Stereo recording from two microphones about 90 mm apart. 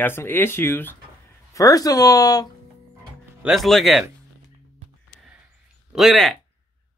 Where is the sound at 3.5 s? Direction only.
Centre (ahead or behind).